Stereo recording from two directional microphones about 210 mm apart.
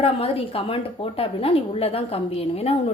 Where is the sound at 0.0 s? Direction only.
30° left (ahead or behind).